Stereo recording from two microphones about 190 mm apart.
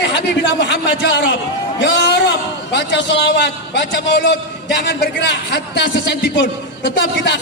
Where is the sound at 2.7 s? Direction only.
65° left (ahead or behind).